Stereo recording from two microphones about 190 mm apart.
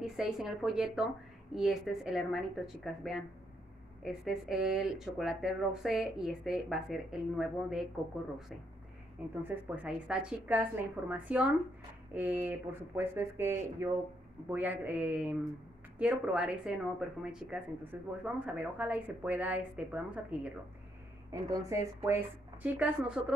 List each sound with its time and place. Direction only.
0.0 s speech: centre (ahead or behind)
9.4 s a woman's voice: 10° right (ahead or behind)
21.3 s a woman's voice: 15° right (ahead or behind)